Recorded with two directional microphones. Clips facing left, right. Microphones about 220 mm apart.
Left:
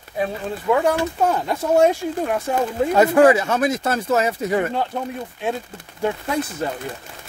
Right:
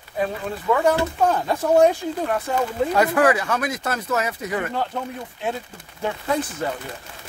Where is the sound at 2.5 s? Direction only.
10° left (ahead or behind).